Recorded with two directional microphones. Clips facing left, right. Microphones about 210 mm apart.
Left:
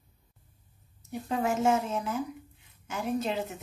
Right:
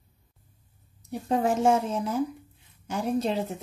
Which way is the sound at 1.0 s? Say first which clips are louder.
Right 4 dB; 35° right (ahead or behind).